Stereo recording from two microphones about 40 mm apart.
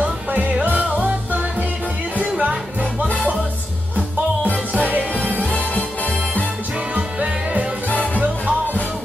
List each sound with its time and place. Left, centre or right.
0.0 s music: right
2.3 s music: right
4.7 s music: right
5.4 s music: left
7.0 s music: right
7.9 s music: left